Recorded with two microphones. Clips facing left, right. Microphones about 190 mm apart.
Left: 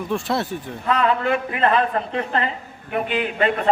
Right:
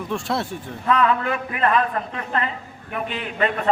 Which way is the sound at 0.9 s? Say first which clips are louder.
Even; 30° left (ahead or behind).